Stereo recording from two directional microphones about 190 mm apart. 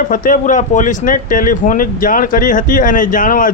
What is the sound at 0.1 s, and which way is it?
Speech, 45° left (ahead or behind).